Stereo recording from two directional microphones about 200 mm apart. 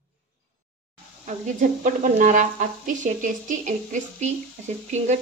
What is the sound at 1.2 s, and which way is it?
Speech, 40° right (ahead or behind).